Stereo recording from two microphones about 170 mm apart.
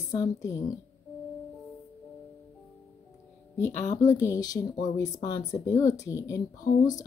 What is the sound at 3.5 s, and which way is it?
Speech, 15° left (ahead or behind).